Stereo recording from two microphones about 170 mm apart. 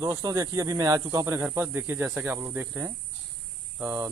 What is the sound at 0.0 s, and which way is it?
Speech, 20° right (ahead or behind).